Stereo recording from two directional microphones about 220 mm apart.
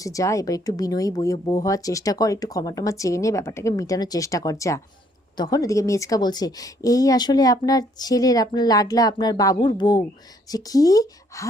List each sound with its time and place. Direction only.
0.0 s speech: 15° left (ahead or behind)